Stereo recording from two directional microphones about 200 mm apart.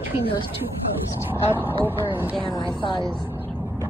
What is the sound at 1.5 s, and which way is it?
Speech, 10° right (ahead or behind).